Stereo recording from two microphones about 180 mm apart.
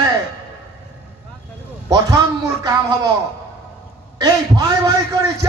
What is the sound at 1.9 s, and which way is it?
Speech, 20° right (ahead or behind).